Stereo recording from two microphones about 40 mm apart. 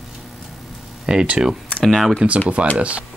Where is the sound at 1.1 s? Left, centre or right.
Right.